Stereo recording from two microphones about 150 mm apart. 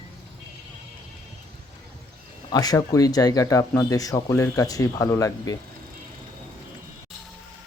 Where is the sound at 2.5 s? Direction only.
25° left (ahead or behind).